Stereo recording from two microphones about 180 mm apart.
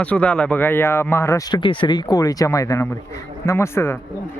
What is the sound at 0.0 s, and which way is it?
A man's voice, 5° left (ahead or behind).